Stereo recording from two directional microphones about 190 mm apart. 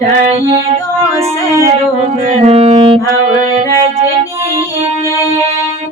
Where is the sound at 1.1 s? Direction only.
15° right (ahead or behind).